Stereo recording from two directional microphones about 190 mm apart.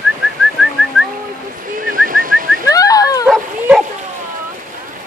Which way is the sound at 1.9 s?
45° right (ahead or behind).